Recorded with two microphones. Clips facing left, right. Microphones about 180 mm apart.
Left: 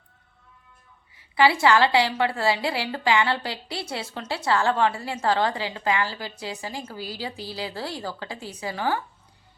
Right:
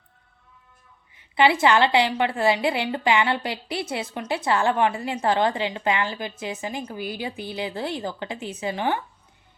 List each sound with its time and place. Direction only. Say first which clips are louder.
1.1 s a woman's voice: right 1 dB; 20° right (ahead or behind)